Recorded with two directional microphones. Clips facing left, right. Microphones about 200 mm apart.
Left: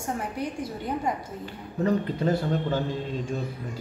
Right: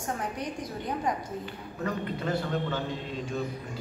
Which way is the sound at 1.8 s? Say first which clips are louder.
Left 7 dB; 40° left (ahead or behind).